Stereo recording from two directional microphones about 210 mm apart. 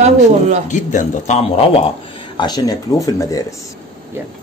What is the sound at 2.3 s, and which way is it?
Speech, 20° left (ahead or behind).